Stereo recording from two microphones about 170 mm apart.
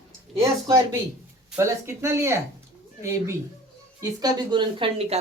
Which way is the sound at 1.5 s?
15° right (ahead or behind).